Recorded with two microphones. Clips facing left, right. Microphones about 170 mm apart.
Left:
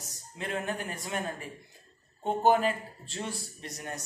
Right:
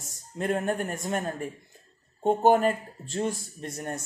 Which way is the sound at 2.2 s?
45° right (ahead or behind).